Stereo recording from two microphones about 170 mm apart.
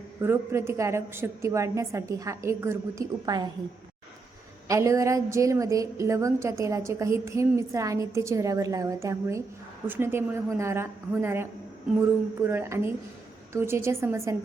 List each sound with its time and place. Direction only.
0.2 s a woman's voice: 15° right (ahead or behind)
4.7 s a woman's voice: 20° right (ahead or behind)
12.5 s a woman's voice: 15° right (ahead or behind)